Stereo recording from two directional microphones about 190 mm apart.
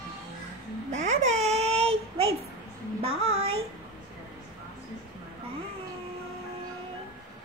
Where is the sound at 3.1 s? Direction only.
90° right.